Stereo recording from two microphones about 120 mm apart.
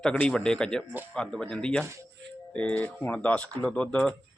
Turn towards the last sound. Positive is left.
turn(degrees=10)  # may be behind; listen again after turning